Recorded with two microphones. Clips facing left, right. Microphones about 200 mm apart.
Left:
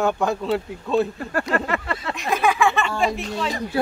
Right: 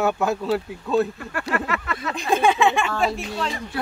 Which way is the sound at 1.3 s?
30° left (ahead or behind).